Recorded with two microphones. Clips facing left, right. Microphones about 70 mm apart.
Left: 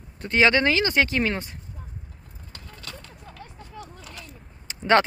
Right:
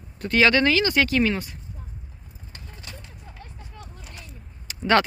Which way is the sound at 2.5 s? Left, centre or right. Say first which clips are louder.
Left 2 dB; right.